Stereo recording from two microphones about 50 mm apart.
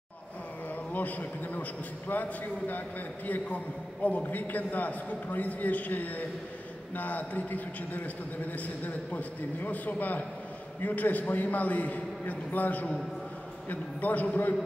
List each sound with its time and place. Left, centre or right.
0.9 s a man's voice: left